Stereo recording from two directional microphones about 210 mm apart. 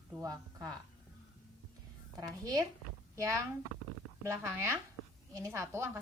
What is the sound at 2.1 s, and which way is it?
Speech, 15° right (ahead or behind).